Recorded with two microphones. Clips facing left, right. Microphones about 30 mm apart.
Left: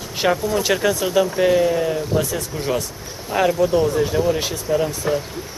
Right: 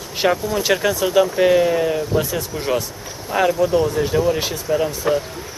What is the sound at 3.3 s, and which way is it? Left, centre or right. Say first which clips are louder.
Speech: right 1 dB; centre.